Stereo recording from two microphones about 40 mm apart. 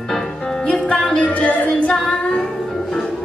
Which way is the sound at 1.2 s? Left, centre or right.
Left.